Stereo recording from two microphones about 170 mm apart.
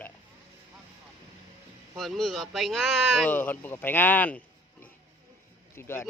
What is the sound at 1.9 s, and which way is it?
Speech, centre (ahead or behind).